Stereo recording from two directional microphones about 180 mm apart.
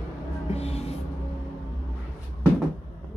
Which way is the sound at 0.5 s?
35° left (ahead or behind).